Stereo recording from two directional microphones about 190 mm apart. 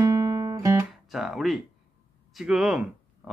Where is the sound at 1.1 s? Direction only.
Centre (ahead or behind).